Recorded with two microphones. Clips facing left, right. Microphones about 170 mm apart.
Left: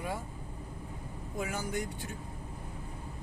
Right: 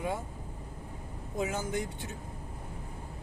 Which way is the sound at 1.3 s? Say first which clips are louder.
Right 3 dB; 20° right (ahead or behind).